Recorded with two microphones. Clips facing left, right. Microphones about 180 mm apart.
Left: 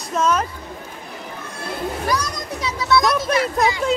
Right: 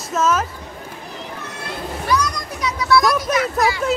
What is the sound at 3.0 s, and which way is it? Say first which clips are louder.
Speech: right 1 dB; centre (ahead or behind).